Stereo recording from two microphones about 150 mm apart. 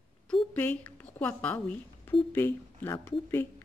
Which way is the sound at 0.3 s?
10° left (ahead or behind).